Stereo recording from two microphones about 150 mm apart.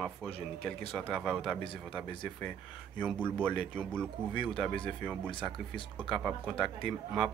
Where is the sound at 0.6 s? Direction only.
5° left (ahead or behind).